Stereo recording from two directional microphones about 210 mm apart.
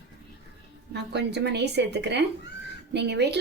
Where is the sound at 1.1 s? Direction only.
55° right (ahead or behind).